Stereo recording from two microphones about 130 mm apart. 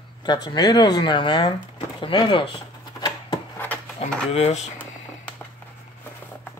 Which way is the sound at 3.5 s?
15° left (ahead or behind).